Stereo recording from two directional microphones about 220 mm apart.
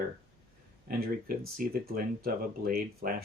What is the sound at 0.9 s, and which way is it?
Speech, 40° right (ahead or behind).